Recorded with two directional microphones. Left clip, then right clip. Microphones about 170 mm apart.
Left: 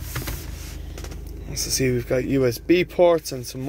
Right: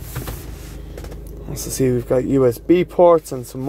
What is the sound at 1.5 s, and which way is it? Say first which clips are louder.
Speech: right 3 dB; 25° right (ahead or behind).